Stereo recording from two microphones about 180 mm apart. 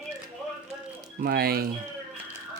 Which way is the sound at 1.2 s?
55° right (ahead or behind).